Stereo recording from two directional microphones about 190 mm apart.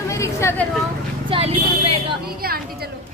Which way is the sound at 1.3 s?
30° right (ahead or behind).